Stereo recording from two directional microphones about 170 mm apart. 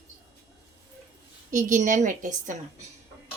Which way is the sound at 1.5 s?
50° right (ahead or behind).